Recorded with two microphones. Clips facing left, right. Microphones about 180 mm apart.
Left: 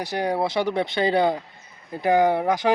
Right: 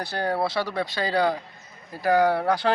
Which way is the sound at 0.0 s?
15° left (ahead or behind).